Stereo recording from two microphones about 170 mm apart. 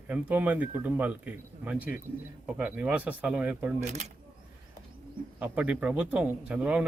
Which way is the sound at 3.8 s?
40° right (ahead or behind).